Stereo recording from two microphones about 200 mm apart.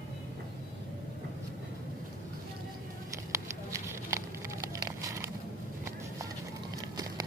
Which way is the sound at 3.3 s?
15° right (ahead or behind).